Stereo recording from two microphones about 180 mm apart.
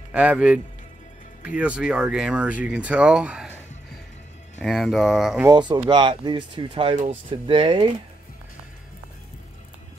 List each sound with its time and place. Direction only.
0.1 s a man's voice: 10° right (ahead or behind)
4.6 s speech: centre (ahead or behind)
5.5 s speech: 25° right (ahead or behind)